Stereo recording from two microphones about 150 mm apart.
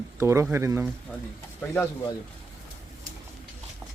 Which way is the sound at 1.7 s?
15° left (ahead or behind).